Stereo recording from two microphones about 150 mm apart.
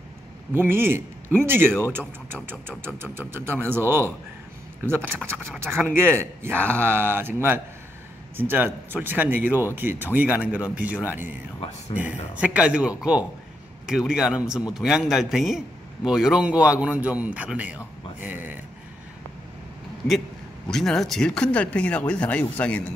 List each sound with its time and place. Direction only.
0.6 s a man's voice: 15° right (ahead or behind)
2.3 s a man's voice: 5° left (ahead or behind)
3.0 s a man's voice: 15° right (ahead or behind)
12.4 s a man's voice: 5° right (ahead or behind)
20.6 s speech: 5° left (ahead or behind)